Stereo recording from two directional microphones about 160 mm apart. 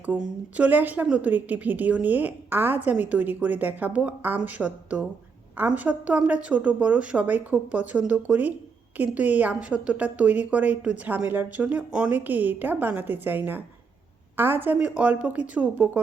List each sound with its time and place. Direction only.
0.0 s a woman's voice: 10° right (ahead or behind)